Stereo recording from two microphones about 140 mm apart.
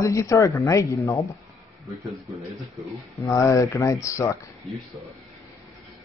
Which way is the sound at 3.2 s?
25° left (ahead or behind).